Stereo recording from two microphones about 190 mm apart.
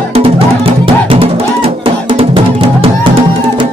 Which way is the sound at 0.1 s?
30° right (ahead or behind).